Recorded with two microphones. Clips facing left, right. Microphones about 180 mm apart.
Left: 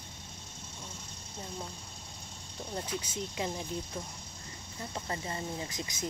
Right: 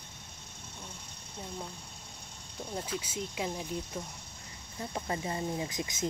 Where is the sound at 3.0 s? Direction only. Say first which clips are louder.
Even; 5° right (ahead or behind).